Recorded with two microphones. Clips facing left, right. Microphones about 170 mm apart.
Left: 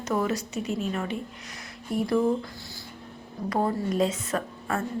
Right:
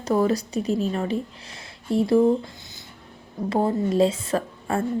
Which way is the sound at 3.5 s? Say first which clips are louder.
Right 4 dB; 25° right (ahead or behind).